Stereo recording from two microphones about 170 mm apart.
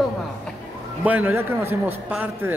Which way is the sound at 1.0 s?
10° right (ahead or behind).